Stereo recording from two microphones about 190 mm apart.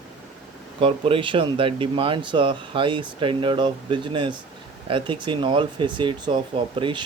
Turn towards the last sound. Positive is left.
turn(degrees=-25)  # may be behind; listen again after turning